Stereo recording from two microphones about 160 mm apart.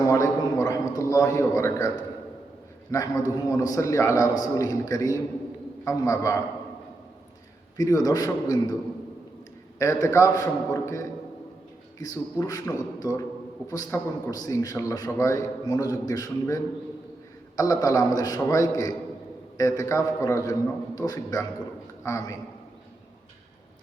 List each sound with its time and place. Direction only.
0.0 s a sound: 20° left (ahead or behind)
2.9 s a man's voice: 20° left (ahead or behind)
7.8 s a man's voice: 20° left (ahead or behind)
9.7 s a man's voice: 20° left (ahead or behind)
17.6 s a man's voice: 20° left (ahead or behind)